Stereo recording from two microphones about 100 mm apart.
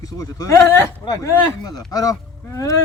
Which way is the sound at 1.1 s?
40° left (ahead or behind).